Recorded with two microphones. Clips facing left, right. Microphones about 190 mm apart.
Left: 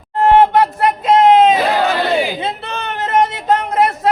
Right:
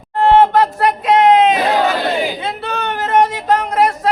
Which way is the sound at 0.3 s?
20° left (ahead or behind).